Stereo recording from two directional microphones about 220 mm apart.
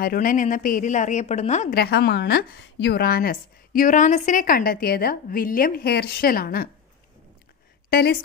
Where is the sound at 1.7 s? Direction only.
45° left (ahead or behind).